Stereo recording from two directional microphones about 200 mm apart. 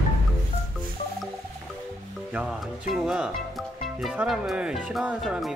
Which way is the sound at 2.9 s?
Centre (ahead or behind).